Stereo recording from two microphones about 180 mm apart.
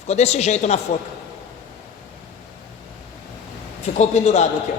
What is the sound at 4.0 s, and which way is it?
Speech, 40° left (ahead or behind).